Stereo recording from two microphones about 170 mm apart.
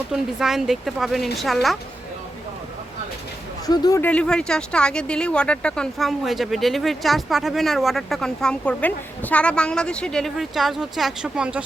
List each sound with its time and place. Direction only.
0.1 s speech: centre (ahead or behind)
3.7 s speech: 20° left (ahead or behind)
4.0 s speech: 5° left (ahead or behind)